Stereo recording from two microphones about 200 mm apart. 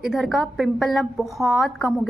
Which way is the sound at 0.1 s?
Centre (ahead or behind).